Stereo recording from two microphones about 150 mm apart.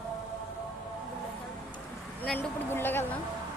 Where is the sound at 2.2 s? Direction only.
15° left (ahead or behind).